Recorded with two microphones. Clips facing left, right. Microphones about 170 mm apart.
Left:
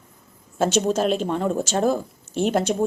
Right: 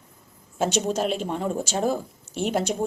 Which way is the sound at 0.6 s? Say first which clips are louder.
Left 4 dB; 15° right (ahead or behind).